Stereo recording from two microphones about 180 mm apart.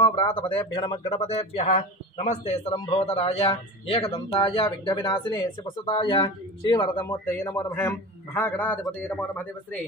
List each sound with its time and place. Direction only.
0.0 s a man's voice: 25° left (ahead or behind); by 9.8 s 10° left (ahead or behind)